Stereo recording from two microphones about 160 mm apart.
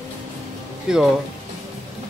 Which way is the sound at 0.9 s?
5° right (ahead or behind).